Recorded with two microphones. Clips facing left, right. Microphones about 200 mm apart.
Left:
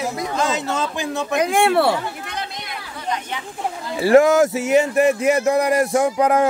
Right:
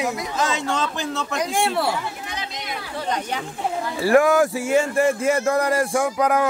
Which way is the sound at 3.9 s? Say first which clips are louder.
Left 4 dB; 25° left (ahead or behind).